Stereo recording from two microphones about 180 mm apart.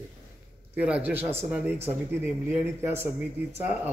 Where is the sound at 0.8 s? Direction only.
5° right (ahead or behind).